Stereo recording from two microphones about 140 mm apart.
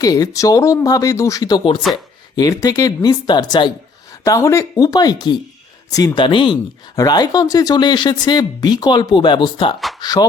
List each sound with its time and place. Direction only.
0.0 s speech: 25° left (ahead or behind)